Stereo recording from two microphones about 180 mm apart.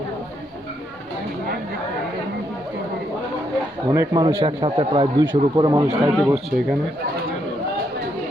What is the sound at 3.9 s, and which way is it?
A man's voice, 25° right (ahead or behind).